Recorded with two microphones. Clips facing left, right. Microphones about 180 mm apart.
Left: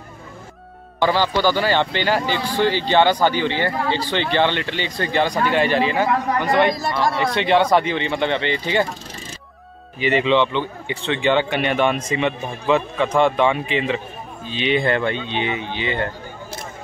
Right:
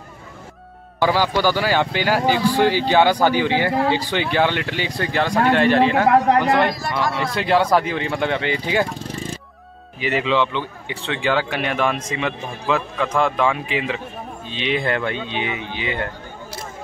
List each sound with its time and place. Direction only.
0.9 s a man's voice: 10° right (ahead or behind)
6.3 s speech: 75° right (ahead or behind)
7.2 s a man's voice: centre (ahead or behind)
9.9 s a man's voice: centre (ahead or behind)